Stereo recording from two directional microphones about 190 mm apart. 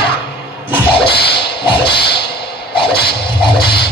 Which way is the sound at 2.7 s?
25° left (ahead or behind).